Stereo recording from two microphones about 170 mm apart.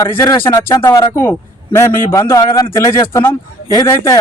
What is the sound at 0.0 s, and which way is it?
Speech, 20° left (ahead or behind).